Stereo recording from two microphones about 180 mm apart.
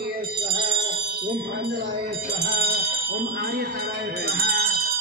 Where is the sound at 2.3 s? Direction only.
65° right (ahead or behind).